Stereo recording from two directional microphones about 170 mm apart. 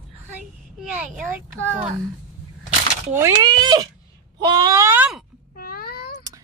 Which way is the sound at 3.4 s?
25° right (ahead or behind).